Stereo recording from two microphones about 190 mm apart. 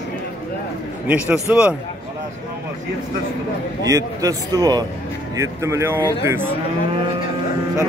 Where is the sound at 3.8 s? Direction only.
20° right (ahead or behind).